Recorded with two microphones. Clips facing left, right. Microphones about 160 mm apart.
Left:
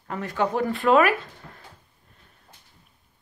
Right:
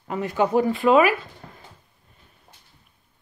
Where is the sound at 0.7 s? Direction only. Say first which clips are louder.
Even; centre (ahead or behind).